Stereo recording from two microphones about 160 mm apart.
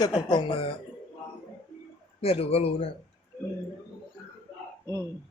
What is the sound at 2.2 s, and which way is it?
Speech, 40° left (ahead or behind).